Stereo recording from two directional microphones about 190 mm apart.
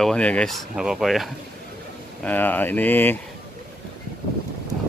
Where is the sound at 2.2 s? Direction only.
10° left (ahead or behind).